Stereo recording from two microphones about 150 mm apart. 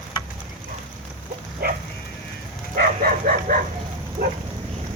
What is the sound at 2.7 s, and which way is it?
Dog, 75° right (ahead or behind).